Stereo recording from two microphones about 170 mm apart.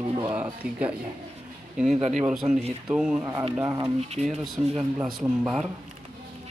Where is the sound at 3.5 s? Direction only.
15° right (ahead or behind).